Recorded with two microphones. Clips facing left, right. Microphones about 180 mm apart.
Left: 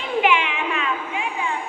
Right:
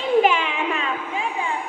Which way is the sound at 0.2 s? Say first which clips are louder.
Right 1 dB; 40° right (ahead or behind).